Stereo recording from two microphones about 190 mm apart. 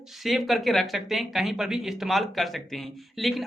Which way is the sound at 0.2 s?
Centre (ahead or behind).